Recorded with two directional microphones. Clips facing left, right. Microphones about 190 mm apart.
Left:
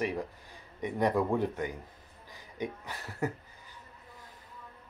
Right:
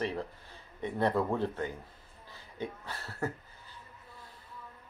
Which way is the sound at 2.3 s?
15° left (ahead or behind).